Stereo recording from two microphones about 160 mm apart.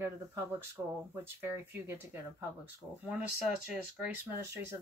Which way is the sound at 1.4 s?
15° right (ahead or behind).